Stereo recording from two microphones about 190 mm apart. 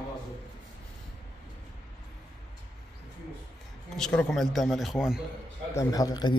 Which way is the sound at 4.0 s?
5° left (ahead or behind).